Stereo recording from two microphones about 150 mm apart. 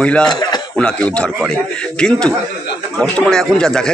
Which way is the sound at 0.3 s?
25° left (ahead or behind).